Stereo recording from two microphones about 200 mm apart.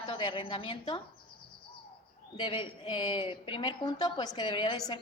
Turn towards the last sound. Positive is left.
turn(degrees=20)  # may be behind; listen again after turning